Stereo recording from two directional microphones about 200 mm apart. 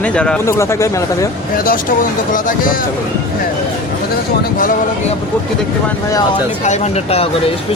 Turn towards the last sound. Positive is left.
turn(degrees=30)  # may be behind; listen again after turning